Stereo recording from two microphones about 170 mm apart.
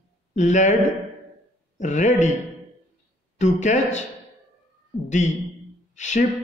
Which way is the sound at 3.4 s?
45° left (ahead or behind).